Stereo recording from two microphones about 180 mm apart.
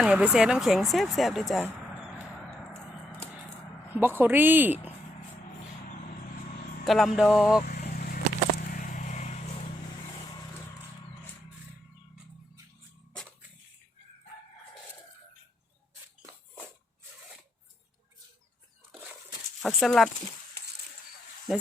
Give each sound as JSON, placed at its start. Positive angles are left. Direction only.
{"t": 0.0, "sound": "speech", "side_deg": -5}
{"t": 3.9, "sound": "a woman's voice", "side_deg": -10}
{"t": 6.8, "sound": "a sound", "side_deg": 0}
{"t": 7.2, "sound": "speech", "side_deg": -5}
{"t": 7.6, "sound": "vehicle", "side_deg": 60}
{"t": 19.6, "sound": "speech", "side_deg": 0}